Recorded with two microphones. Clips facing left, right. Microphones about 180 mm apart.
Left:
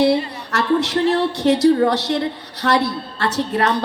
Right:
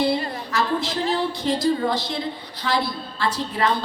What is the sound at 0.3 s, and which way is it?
A woman's voice, 75° left (ahead or behind).